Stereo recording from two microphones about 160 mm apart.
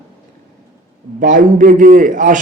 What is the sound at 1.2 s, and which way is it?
A man's voice, 55° right (ahead or behind).